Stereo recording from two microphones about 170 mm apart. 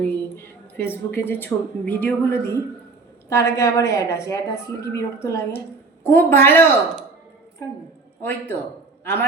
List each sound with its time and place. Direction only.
0.0 s a woman's voice: 15° left (ahead or behind)
8.2 s a woman's voice: 10° left (ahead or behind)